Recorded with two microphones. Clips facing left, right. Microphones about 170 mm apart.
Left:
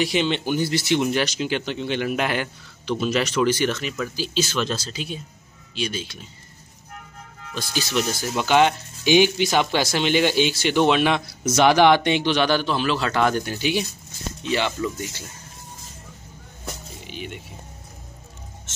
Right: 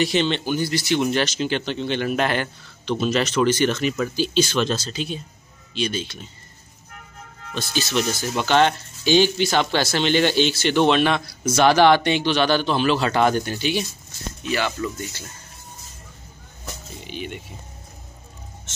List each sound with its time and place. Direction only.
0.0 s speech: 10° left (ahead or behind)
1.0 s speech: 10° left (ahead or behind)
7.5 s speech: 10° left (ahead or behind)
14.4 s speech: 20° left (ahead or behind)
17.1 s speech: centre (ahead or behind)